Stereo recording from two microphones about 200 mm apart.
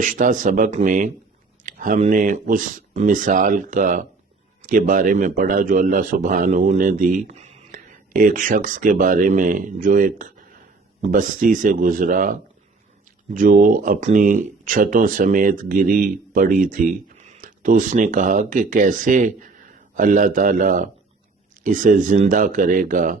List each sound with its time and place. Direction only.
0.0 s speech: 40° right (ahead or behind)